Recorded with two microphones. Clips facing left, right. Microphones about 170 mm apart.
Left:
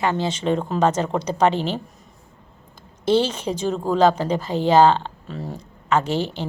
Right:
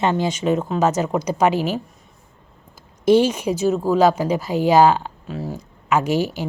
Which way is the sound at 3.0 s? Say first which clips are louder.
Right 4 dB; 10° right (ahead or behind).